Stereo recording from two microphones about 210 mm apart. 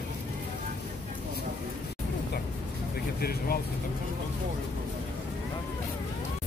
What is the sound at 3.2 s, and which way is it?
Vehicle, 45° left (ahead or behind).